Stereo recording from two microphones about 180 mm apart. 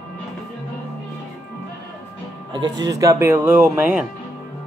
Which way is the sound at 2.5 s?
25° right (ahead or behind).